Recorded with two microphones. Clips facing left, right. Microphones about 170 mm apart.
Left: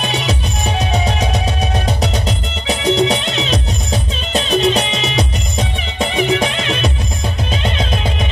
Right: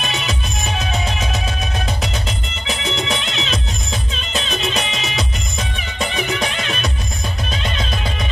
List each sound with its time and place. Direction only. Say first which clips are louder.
0.0 s music: left 5 dB; 35° left (ahead or behind)
2.0 s music: left 6 dB; 35° left (ahead or behind)